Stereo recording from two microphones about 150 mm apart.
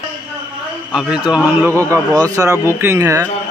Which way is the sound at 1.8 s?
20° right (ahead or behind).